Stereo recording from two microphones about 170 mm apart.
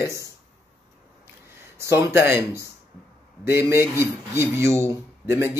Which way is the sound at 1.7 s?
15° right (ahead or behind).